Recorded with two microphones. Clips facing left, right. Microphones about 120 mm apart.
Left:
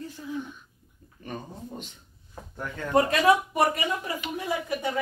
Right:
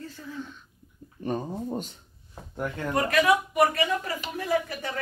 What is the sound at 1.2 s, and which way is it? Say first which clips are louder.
Speech: right 8 dB; 35° right (ahead or behind).